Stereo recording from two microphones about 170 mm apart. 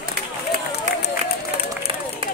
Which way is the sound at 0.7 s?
70° left (ahead or behind).